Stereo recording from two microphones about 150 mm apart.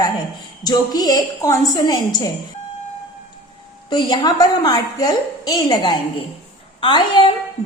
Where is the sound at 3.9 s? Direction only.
30° left (ahead or behind).